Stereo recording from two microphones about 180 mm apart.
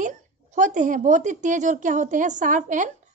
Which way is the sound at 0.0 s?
45° right (ahead or behind).